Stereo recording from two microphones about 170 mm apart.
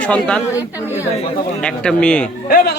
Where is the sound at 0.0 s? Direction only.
5° left (ahead or behind).